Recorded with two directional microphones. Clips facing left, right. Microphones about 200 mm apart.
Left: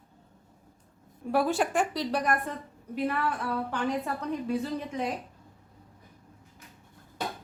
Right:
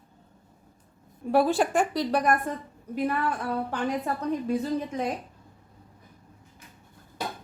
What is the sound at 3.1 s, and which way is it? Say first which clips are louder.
A woman's voice: right 2 dB; 40° right (ahead or behind).